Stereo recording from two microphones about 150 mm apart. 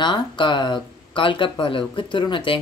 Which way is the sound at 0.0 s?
30° left (ahead or behind).